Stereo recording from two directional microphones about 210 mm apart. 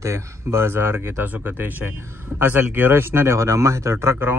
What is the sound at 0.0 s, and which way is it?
A man's voice, 15° right (ahead or behind).